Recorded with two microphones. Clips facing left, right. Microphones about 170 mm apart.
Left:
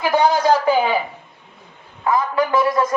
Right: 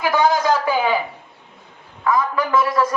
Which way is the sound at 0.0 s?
30° left (ahead or behind).